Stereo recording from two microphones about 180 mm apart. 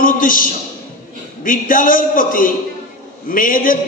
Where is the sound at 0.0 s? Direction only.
50° left (ahead or behind).